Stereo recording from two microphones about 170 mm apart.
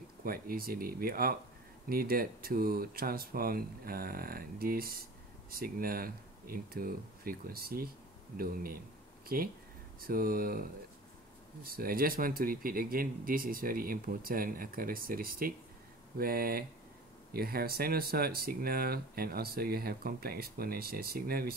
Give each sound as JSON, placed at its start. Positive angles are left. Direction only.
{"t": 0.2, "sound": "speech", "side_deg": -60}